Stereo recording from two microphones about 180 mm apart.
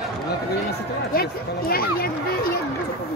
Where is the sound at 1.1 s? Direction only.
55° left (ahead or behind).